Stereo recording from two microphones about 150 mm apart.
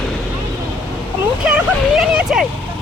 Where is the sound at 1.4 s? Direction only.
5° right (ahead or behind).